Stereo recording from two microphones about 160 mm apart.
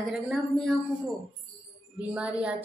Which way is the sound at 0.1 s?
Centre (ahead or behind).